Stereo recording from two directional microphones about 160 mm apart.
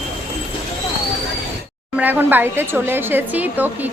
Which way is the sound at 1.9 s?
10° right (ahead or behind).